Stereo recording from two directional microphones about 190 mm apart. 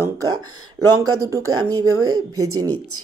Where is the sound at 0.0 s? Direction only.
15° right (ahead or behind).